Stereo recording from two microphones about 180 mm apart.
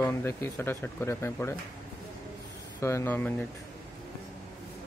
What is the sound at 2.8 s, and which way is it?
Speech, 15° left (ahead or behind).